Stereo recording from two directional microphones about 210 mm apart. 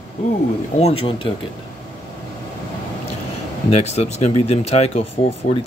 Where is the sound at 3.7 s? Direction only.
30° left (ahead or behind).